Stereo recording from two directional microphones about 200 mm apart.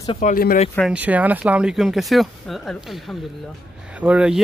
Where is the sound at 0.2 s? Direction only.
45° left (ahead or behind).